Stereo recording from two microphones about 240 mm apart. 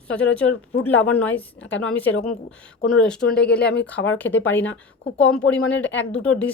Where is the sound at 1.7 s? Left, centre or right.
Left.